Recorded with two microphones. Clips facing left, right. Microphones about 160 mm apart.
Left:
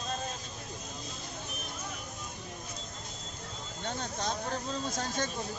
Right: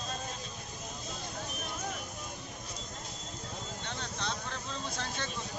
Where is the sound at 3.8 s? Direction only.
40° left (ahead or behind).